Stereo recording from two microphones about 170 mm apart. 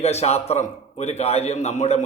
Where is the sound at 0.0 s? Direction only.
40° left (ahead or behind).